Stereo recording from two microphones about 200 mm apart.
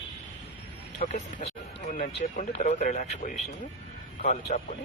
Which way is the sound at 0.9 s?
35° left (ahead or behind).